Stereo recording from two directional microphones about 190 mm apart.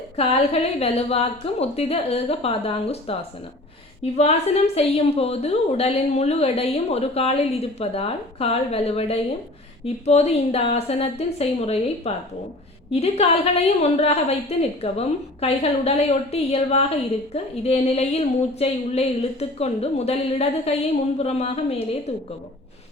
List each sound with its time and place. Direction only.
0.2 s a woman's voice: 30° left (ahead or behind)
4.2 s a woman's voice: 35° left (ahead or behind)